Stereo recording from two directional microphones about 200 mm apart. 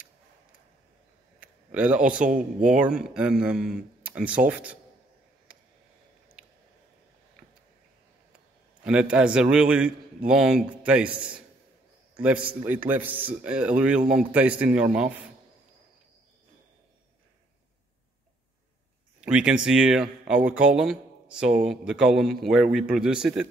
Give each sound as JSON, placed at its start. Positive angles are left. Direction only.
{"t": 1.4, "sound": "a sound", "side_deg": -5}
{"t": 2.2, "sound": "speech", "side_deg": -40}
{"t": 2.8, "sound": "speech", "side_deg": -5}
{"t": 8.8, "sound": "speech", "side_deg": -5}
{"t": 19.2, "sound": "speech", "side_deg": -5}